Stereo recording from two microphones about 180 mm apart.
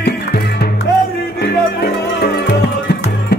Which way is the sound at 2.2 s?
65° left (ahead or behind).